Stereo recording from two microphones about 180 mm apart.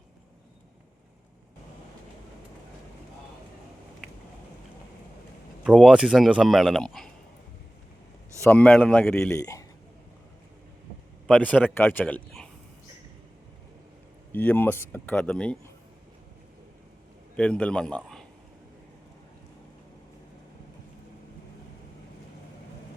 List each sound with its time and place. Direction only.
5.6 s speech: 5° right (ahead or behind)
8.4 s speech: 10° left (ahead or behind)
11.3 s speech: 10° left (ahead or behind)
14.3 s speech: 10° left (ahead or behind)
17.3 s a man's voice: 5° left (ahead or behind)